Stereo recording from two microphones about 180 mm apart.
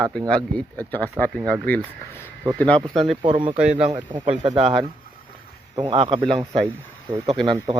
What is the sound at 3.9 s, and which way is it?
Speech, 25° right (ahead or behind).